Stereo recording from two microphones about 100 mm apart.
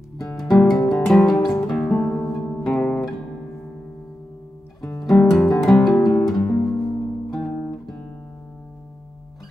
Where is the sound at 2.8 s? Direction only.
20° left (ahead or behind).